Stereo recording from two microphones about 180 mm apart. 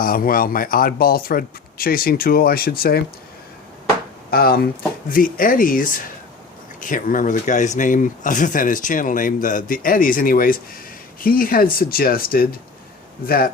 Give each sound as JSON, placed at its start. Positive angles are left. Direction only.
{"t": 0.0, "sound": "speech", "side_deg": 55}
{"t": 4.3, "sound": "speech", "side_deg": 55}